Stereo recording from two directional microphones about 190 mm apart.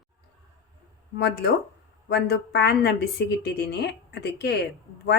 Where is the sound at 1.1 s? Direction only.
60° left (ahead or behind).